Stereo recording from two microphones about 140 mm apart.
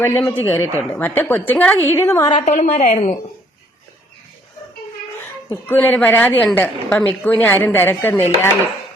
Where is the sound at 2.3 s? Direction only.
55° left (ahead or behind).